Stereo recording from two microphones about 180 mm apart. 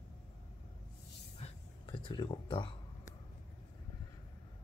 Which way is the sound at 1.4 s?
30° left (ahead or behind).